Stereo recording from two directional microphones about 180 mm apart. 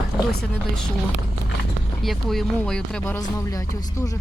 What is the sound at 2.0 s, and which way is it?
Speech, centre (ahead or behind).